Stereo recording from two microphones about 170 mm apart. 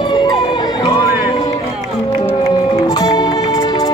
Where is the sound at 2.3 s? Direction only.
20° left (ahead or behind).